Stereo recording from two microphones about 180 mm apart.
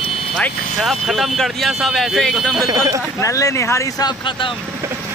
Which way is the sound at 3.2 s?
20° left (ahead or behind).